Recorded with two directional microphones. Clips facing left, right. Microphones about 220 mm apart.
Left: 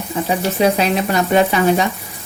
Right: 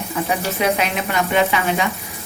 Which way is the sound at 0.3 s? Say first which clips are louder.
Left 5 dB; 30° left (ahead or behind).